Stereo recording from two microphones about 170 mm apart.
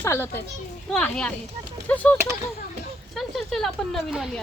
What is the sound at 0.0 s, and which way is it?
A child's voice, 15° left (ahead or behind).